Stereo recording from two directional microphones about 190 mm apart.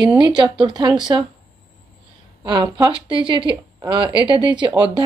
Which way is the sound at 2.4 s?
20° right (ahead or behind).